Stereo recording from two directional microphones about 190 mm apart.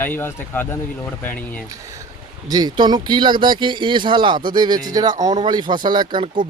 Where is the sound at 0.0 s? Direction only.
10° left (ahead or behind).